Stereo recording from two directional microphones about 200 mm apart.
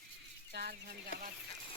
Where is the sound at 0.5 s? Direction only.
50° right (ahead or behind).